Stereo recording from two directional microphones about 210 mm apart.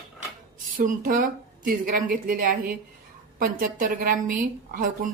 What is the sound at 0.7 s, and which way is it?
A woman's voice, 40° right (ahead or behind).